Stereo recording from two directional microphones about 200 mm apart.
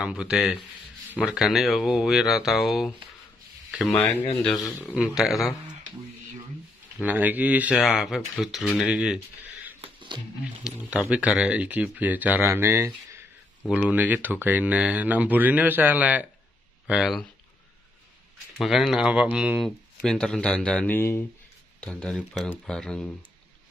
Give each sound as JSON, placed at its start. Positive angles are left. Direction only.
{"t": 0.0, "sound": "speech", "side_deg": -5}
{"t": 4.6, "sound": "speech", "side_deg": 0}
{"t": 7.1, "sound": "speech", "side_deg": -10}
{"t": 9.8, "sound": "a sound", "side_deg": -25}
{"t": 10.6, "sound": "speech", "side_deg": -5}
{"t": 18.6, "sound": "speech", "side_deg": 0}